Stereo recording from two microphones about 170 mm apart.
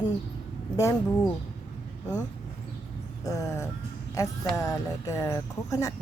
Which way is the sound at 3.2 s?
15° left (ahead or behind).